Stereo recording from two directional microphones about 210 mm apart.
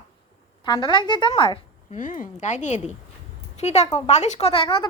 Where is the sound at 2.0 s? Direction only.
40° left (ahead or behind).